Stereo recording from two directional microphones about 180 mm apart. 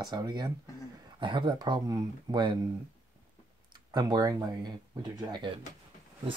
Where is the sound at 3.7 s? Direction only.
25° right (ahead or behind).